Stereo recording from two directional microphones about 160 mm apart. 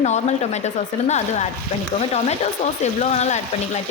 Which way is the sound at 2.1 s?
40° left (ahead or behind).